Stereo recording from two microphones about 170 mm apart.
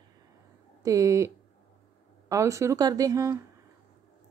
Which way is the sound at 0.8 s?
20° right (ahead or behind).